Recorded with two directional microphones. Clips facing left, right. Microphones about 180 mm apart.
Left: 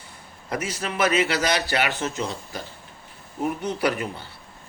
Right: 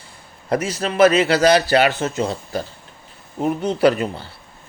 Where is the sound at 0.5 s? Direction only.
35° right (ahead or behind).